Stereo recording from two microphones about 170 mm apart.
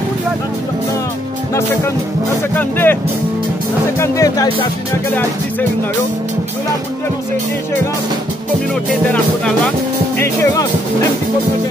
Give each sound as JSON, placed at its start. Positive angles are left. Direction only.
{"t": 2.5, "sound": "speech", "side_deg": 10}
{"t": 4.0, "sound": "speech", "side_deg": 20}
{"t": 9.0, "sound": "speech", "side_deg": 5}
{"t": 10.1, "sound": "speech", "side_deg": 15}